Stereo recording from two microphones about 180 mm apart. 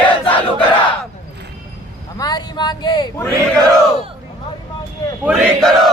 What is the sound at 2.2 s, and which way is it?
Speech, 20° left (ahead or behind).